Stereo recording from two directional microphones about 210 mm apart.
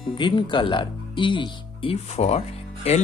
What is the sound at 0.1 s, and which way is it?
Speech, 20° left (ahead or behind).